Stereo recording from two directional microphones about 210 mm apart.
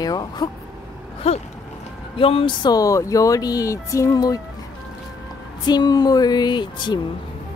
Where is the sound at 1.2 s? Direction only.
30° left (ahead or behind).